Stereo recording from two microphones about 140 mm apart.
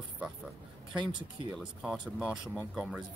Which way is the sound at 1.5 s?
5° right (ahead or behind).